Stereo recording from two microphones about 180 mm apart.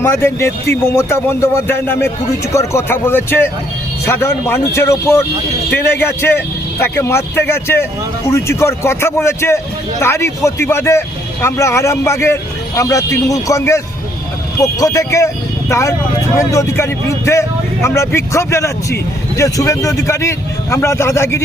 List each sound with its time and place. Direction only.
0.0 s a man's voice: 15° left (ahead or behind)